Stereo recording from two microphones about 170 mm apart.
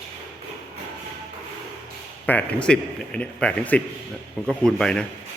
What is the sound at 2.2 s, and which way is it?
A man's voice, 10° left (ahead or behind).